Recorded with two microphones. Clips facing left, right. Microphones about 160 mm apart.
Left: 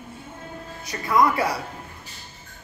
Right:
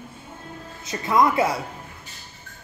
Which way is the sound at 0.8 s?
20° right (ahead or behind).